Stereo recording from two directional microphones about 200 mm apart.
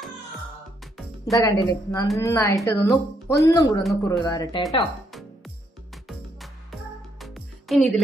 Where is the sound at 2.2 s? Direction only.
15° left (ahead or behind).